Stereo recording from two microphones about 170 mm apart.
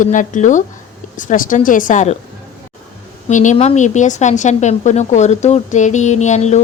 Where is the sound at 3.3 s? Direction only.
45° left (ahead or behind).